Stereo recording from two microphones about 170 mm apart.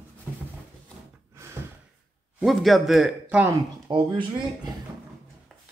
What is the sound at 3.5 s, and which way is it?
Speech, 30° right (ahead or behind).